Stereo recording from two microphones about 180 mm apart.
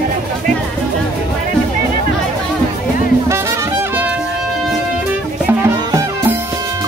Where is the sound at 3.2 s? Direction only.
15° right (ahead or behind).